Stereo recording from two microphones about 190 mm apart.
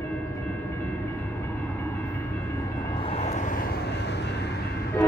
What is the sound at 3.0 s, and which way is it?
Vehicle, 35° left (ahead or behind).